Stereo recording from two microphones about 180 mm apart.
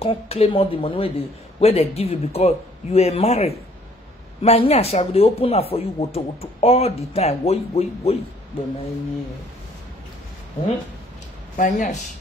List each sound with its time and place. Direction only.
0.0 s speech: 35° left (ahead or behind)
11.5 s speech: 40° left (ahead or behind)